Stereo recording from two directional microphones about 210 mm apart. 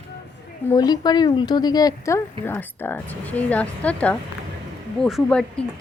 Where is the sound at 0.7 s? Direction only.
20° left (ahead or behind).